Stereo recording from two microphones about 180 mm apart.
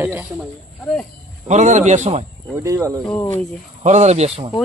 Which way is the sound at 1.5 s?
40° right (ahead or behind).